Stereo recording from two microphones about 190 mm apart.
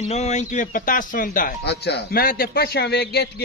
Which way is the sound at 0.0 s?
35° left (ahead or behind).